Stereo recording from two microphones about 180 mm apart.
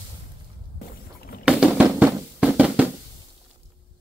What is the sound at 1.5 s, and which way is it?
Music, 5° right (ahead or behind).